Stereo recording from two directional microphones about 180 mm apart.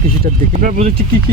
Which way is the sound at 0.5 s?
45° right (ahead or behind).